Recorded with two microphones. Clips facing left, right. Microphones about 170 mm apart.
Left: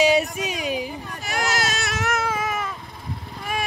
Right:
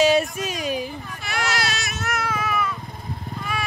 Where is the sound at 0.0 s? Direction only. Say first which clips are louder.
Right 1 dB; 15° left (ahead or behind).